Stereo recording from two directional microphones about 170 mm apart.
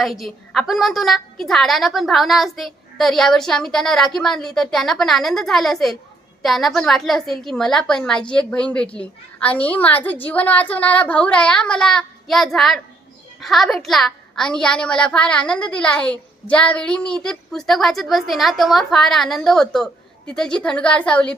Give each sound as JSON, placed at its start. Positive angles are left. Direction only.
{"t": 0.0, "sound": "a woman's voice", "side_deg": 0}